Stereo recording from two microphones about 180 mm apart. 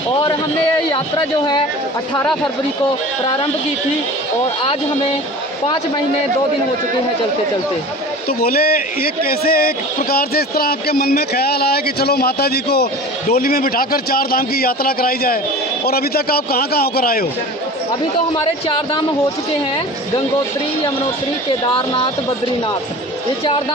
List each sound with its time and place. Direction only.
8.3 s a man's voice: 55° left (ahead or behind)
21.8 s speech: 30° left (ahead or behind)